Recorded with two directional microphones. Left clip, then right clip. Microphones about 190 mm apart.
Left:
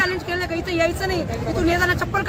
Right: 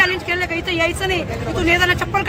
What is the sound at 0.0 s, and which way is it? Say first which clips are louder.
A man's voice: right 5 dB; 5° right (ahead or behind).